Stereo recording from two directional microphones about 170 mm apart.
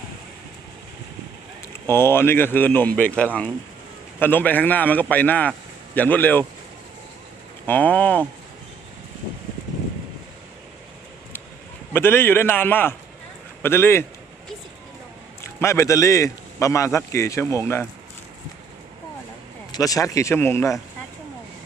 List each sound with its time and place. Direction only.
1.6 s a man's voice: 15° left (ahead or behind)
7.7 s a man's voice: 10° left (ahead or behind)
11.9 s a man's voice: 15° left (ahead or behind)
15.4 s a man's voice: 15° left (ahead or behind)
19.7 s a man's voice: 20° left (ahead or behind)